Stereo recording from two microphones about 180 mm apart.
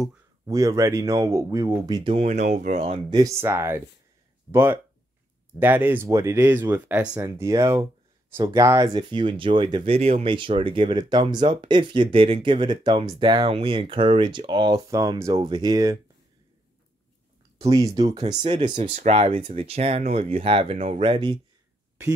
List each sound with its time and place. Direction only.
0.5 s speech: 20° right (ahead or behind)
2.1 s speech: 40° right (ahead or behind); by 7.8 s 15° right (ahead or behind)
8.4 s speech: 25° right (ahead or behind)
17.6 s speech: 20° right (ahead or behind)
18.4 s speech: 35° right (ahead or behind)